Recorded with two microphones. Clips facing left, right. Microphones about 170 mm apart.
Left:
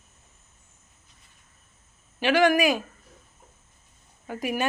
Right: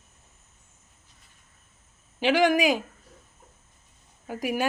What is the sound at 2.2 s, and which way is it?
Speech, 15° right (ahead or behind).